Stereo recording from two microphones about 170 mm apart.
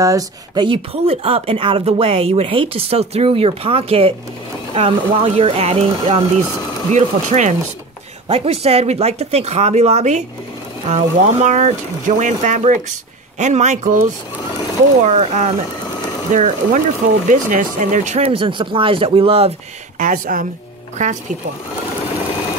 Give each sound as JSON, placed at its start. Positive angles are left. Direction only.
{"t": 0.0, "sound": "speech", "side_deg": -20}
{"t": 0.7, "sound": "speech", "side_deg": -35}
{"t": 20.0, "sound": "speech", "side_deg": -55}